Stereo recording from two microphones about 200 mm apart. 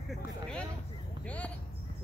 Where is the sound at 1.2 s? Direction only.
5° left (ahead or behind).